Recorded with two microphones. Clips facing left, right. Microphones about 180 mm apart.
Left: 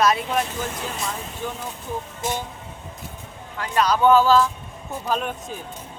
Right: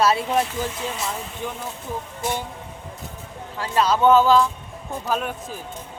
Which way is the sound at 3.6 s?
25° right (ahead or behind).